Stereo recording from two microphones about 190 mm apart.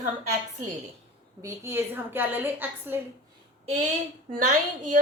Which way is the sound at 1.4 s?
15° right (ahead or behind).